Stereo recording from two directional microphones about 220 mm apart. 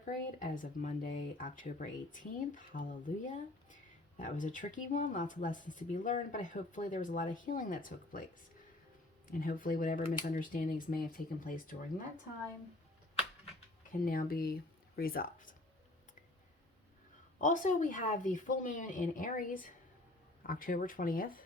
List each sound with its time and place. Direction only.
0.0 s speech: 35° left (ahead or behind)
4.2 s speech: 35° left (ahead or behind)
9.3 s speech: 40° left (ahead or behind)
14.0 s speech: 40° left (ahead or behind)
17.3 s speech: 35° left (ahead or behind)